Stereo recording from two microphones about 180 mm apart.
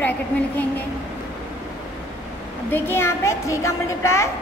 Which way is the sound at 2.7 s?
10° left (ahead or behind).